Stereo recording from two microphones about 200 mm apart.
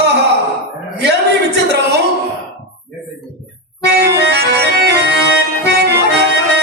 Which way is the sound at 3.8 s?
55° right (ahead or behind).